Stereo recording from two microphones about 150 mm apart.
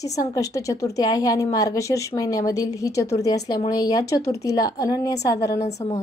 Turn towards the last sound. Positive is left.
turn(degrees=20)  # may be behind; listen again after turning